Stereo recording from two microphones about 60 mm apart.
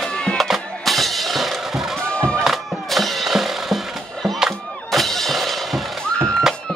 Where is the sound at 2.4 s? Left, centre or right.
Centre.